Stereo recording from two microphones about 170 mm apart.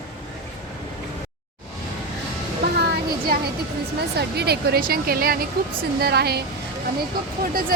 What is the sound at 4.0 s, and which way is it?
Speech, 70° right (ahead or behind).